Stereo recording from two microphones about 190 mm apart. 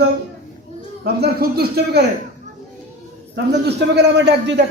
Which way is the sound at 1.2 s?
55° right (ahead or behind).